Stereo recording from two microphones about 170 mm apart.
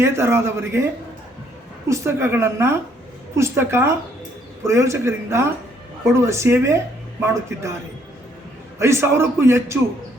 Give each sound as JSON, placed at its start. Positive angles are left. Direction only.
{"t": 0.0, "sound": "a man's voice", "side_deg": -15}
{"t": 1.9, "sound": "a man's voice", "side_deg": -15}
{"t": 8.8, "sound": "a man's voice", "side_deg": -15}